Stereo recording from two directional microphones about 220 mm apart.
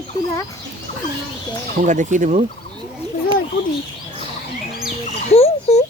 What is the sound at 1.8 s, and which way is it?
Speech, 35° right (ahead or behind).